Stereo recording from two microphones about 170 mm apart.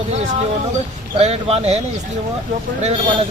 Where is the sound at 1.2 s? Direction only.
35° right (ahead or behind).